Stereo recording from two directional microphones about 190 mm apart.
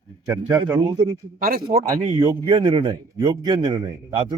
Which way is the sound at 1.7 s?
45° right (ahead or behind).